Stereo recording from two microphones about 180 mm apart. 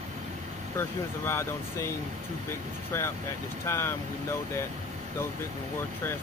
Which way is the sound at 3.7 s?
15° left (ahead or behind).